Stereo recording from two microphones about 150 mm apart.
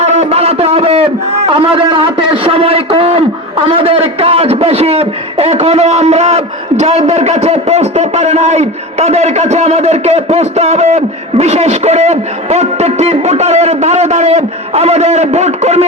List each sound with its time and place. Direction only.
0.0 s a man's voice: 50° right (ahead or behind)